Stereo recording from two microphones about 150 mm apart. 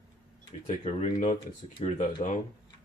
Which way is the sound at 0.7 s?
45° left (ahead or behind).